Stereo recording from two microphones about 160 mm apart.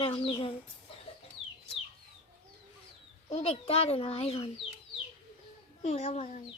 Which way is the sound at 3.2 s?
40° left (ahead or behind).